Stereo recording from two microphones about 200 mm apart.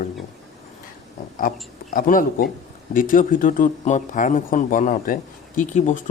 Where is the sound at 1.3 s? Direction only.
45° left (ahead or behind).